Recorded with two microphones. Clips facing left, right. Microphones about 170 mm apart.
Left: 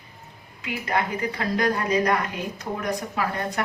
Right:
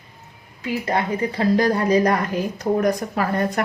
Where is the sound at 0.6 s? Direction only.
30° right (ahead or behind).